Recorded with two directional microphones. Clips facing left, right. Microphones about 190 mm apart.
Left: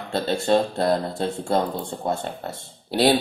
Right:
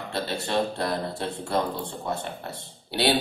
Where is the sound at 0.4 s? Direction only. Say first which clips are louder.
Left 6 dB; 45° left (ahead or behind).